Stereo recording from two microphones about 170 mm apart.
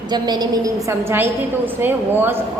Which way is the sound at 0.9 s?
15° right (ahead or behind).